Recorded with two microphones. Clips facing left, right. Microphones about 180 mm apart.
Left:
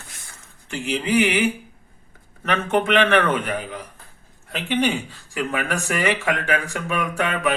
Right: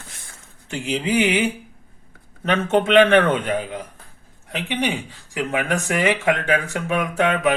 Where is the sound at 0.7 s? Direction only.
25° right (ahead or behind).